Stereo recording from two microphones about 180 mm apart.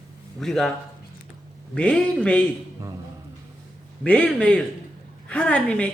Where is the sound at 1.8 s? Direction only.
5° left (ahead or behind).